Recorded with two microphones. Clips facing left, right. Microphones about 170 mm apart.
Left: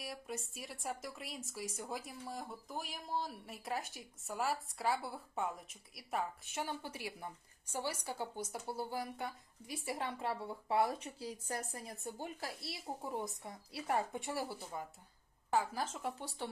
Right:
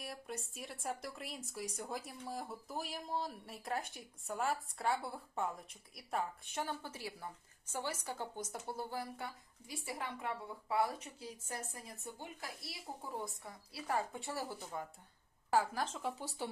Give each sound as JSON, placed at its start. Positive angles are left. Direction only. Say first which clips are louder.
{"t": 0.0, "sound": "speech", "louder": "left 1 dB", "side_deg": 0}
{"t": 12.6, "sound": "speech", "louder": "left 4 dB", "side_deg": 20}
{"t": 15.4, "sound": "a woman's voice", "louder": "right 1 dB", "side_deg": -5}